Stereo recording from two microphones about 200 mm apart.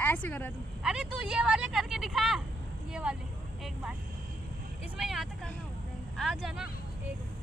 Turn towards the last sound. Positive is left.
turn(degrees=0)  # may be behind; listen again after turning